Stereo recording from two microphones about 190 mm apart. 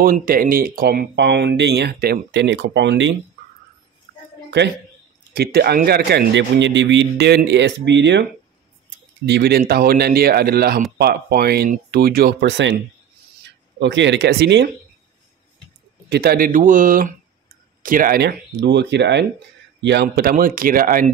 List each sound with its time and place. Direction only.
0.0 s speech: 50° right (ahead or behind); by 3.2 s 70° right (ahead or behind)
5.3 s speech: 55° right (ahead or behind); by 12.7 s 75° right (ahead or behind)
13.7 s speech: 70° right (ahead or behind)
16.1 s speech: 55° right (ahead or behind)